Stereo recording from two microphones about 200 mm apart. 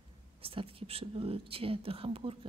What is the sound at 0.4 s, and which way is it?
Speech, 30° right (ahead or behind).